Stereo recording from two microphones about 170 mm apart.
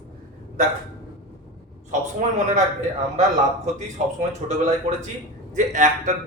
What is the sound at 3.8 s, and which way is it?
A man's voice, 40° right (ahead or behind).